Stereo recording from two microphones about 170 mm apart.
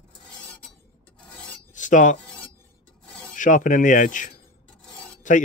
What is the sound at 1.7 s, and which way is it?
Filing, 50° left (ahead or behind).